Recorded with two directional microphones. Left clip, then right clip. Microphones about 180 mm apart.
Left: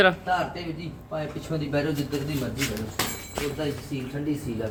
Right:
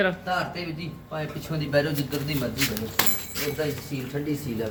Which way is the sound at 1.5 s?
10° right (ahead or behind).